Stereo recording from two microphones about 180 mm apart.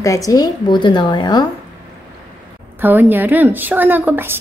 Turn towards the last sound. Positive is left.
turn(degrees=-10)  # may be behind; listen again after turning